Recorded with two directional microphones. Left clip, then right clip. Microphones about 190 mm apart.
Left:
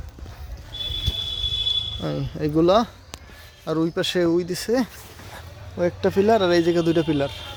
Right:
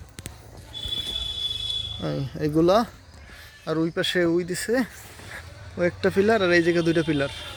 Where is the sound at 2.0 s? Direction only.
Centre (ahead or behind).